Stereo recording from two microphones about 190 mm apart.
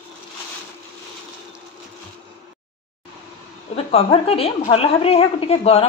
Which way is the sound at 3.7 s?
30° left (ahead or behind).